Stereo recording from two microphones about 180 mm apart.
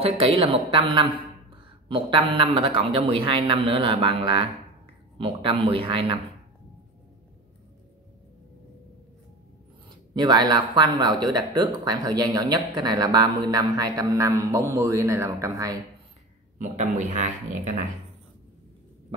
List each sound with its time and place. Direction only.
0.0 s a woman's voice: 30° right (ahead or behind)
9.8 s speech: 25° right (ahead or behind)
16.5 s speech: 45° right (ahead or behind)